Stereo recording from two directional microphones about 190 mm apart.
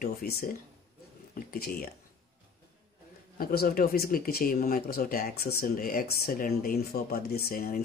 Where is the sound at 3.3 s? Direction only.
50° left (ahead or behind).